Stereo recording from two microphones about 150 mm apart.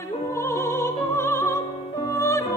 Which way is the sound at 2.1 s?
20° left (ahead or behind).